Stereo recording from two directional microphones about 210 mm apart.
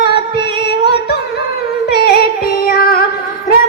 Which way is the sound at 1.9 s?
50° left (ahead or behind).